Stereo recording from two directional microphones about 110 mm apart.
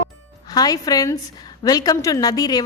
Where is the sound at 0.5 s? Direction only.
35° left (ahead or behind).